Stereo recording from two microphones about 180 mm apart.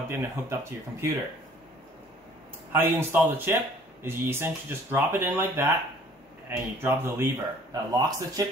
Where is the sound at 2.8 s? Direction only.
10° right (ahead or behind).